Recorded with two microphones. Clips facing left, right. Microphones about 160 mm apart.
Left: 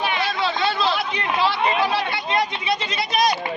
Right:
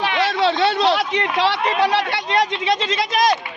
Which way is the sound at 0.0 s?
90° right.